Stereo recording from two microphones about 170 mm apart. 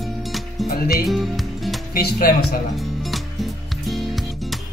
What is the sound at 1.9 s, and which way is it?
Speech, 65° left (ahead or behind).